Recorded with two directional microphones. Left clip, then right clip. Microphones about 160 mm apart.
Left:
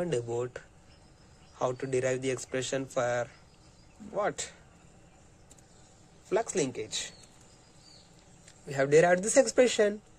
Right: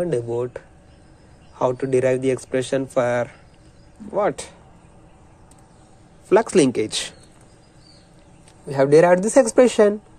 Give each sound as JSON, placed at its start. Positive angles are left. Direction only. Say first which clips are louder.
{"t": 0.0, "sound": "speech", "louder": "right 9 dB", "side_deg": 5}
{"t": 1.5, "sound": "a man's voice", "louder": "right 11 dB", "side_deg": -10}
{"t": 6.2, "sound": "speech", "louder": "right 14 dB", "side_deg": -25}
{"t": 8.6, "sound": "speech", "louder": "right 9 dB", "side_deg": 0}